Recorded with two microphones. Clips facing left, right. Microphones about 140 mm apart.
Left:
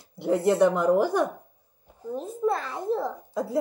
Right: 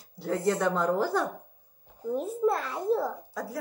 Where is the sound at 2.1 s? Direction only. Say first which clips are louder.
Even; 5° right (ahead or behind).